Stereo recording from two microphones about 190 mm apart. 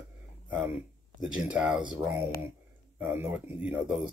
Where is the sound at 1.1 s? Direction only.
5° right (ahead or behind).